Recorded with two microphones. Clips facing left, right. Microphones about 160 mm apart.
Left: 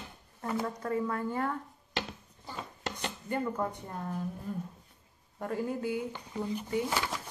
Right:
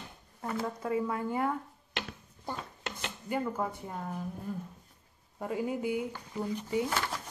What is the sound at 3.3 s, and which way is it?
Speech, 5° right (ahead or behind).